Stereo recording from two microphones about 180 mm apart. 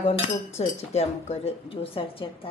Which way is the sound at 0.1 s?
35° left (ahead or behind).